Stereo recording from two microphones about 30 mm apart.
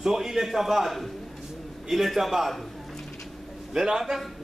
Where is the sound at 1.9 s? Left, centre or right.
Centre.